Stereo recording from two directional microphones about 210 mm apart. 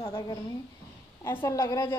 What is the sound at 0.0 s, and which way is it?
A woman's voice, 20° left (ahead or behind).